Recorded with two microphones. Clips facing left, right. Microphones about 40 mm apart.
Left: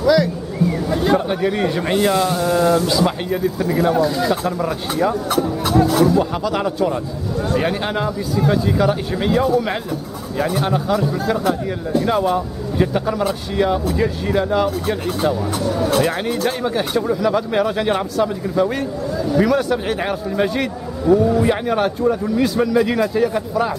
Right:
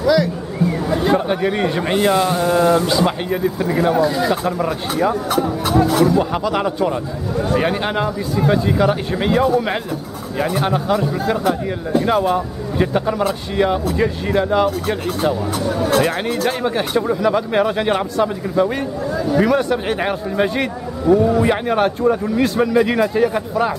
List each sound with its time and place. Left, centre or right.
0.0 s speech: centre